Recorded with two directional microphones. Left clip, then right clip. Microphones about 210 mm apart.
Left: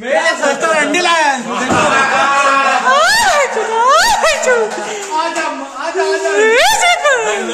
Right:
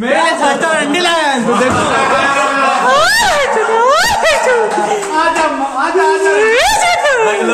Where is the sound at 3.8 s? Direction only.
15° left (ahead or behind).